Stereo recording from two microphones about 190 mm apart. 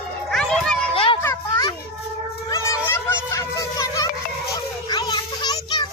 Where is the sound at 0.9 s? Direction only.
25° left (ahead or behind).